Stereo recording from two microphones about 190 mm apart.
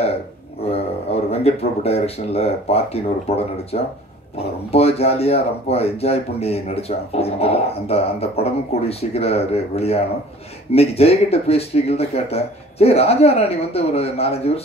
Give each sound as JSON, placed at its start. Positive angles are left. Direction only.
{"t": 1.3, "sound": "speech", "side_deg": 35}